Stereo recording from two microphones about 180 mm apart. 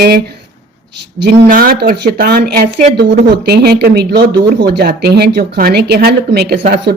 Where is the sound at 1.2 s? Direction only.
55° right (ahead or behind).